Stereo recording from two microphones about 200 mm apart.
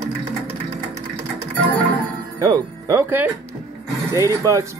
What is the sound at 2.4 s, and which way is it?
Speech, 20° right (ahead or behind).